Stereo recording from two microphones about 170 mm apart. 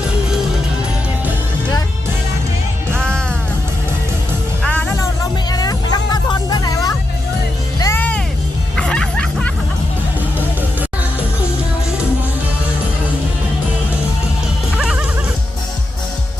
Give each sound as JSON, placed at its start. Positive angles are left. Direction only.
{"t": 3.0, "sound": "music", "side_deg": 5}
{"t": 4.6, "sound": "music", "side_deg": 10}
{"t": 5.5, "sound": "music", "side_deg": 20}
{"t": 14.8, "sound": "music", "side_deg": -5}